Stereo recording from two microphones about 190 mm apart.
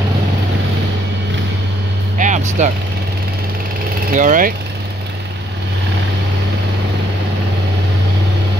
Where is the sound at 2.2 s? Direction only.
40° right (ahead or behind).